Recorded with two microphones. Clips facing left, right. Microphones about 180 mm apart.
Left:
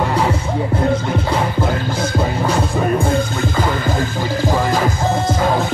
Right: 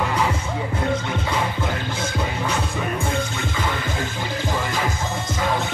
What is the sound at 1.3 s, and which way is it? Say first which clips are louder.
Music: left 5 dB; 35° left (ahead or behind).